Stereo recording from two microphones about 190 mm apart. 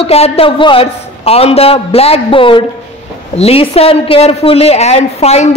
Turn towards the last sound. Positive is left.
turn(degrees=35)  # may be behind; listen again after turning